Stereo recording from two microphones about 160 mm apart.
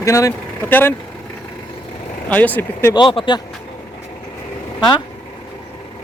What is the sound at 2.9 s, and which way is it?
Speech, 30° left (ahead or behind).